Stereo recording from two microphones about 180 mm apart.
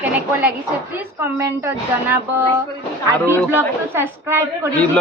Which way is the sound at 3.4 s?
10° right (ahead or behind).